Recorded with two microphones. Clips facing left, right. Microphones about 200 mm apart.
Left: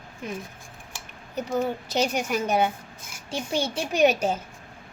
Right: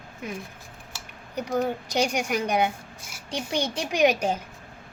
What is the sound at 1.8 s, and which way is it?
Speech, 15° right (ahead or behind).